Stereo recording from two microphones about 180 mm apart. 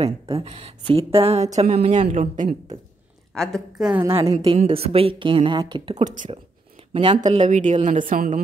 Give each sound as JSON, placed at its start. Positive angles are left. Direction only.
{"t": 0.0, "sound": "speech", "side_deg": -35}
{"t": 3.3, "sound": "a woman's voice", "side_deg": 0}
{"t": 4.3, "sound": "speech", "side_deg": -20}
{"t": 4.6, "sound": "speech", "side_deg": -35}
{"t": 5.9, "sound": "speech", "side_deg": -45}
{"t": 6.9, "sound": "speech", "side_deg": -30}